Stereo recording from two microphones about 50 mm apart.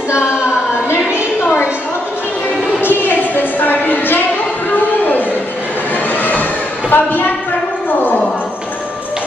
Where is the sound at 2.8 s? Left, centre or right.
Left.